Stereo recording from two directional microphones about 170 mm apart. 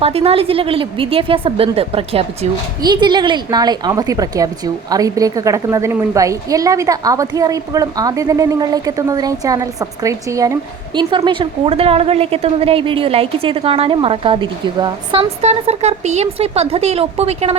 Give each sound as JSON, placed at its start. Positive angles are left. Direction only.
{"t": 0.0, "sound": "a woman's voice", "side_deg": -35}